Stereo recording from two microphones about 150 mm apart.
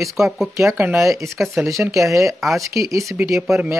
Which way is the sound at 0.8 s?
15° right (ahead or behind).